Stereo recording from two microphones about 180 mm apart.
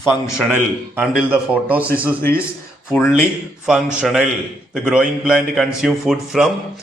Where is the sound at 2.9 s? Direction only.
5° right (ahead or behind).